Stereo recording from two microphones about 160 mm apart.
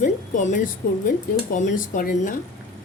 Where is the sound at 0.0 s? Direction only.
55° left (ahead or behind).